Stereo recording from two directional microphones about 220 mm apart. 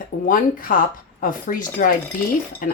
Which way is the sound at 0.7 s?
35° left (ahead or behind).